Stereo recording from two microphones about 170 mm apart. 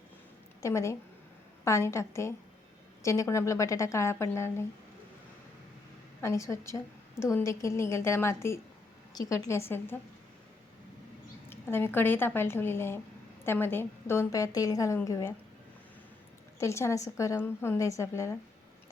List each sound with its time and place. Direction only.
0.6 s a woman's voice: 15° left (ahead or behind)
6.2 s a woman's voice: 15° left (ahead or behind)
11.4 s a woman's voice: 15° left (ahead or behind)
16.6 s a woman's voice: 15° left (ahead or behind)